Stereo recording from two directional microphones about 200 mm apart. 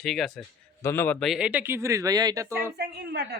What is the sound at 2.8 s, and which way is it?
Speech, 55° right (ahead or behind).